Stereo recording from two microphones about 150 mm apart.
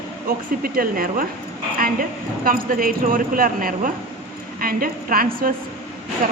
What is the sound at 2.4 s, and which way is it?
A woman's voice, 70° right (ahead or behind).